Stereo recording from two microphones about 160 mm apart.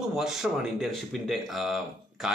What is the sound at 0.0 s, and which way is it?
A man's voice, 5° right (ahead or behind).